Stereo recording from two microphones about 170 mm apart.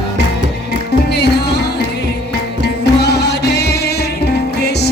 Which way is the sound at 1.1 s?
75° left (ahead or behind).